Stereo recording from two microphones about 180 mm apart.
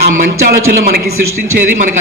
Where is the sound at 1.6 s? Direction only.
50° right (ahead or behind).